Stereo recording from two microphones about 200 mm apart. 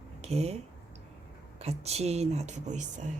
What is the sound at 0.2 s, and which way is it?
Speech, 30° right (ahead or behind).